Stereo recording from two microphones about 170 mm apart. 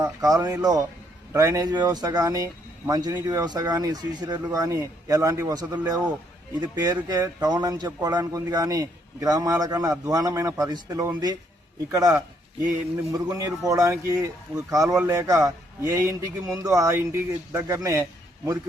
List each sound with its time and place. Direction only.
0.0 s speech: 20° right (ahead or behind)
13.2 s speech: 20° right (ahead or behind)